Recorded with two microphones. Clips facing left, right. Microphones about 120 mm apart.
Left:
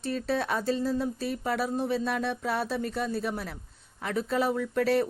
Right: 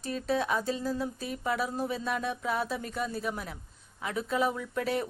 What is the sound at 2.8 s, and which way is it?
Speech, 45° left (ahead or behind).